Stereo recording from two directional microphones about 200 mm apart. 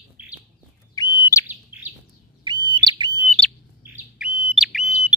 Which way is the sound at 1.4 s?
10° right (ahead or behind).